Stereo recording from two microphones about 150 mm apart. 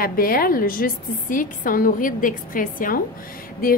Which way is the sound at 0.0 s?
75° left (ahead or behind).